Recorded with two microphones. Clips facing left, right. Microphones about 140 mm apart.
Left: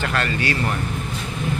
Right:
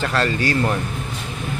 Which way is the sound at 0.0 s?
35° right (ahead or behind).